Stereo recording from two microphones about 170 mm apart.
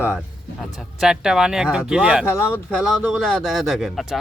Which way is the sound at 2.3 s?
15° left (ahead or behind).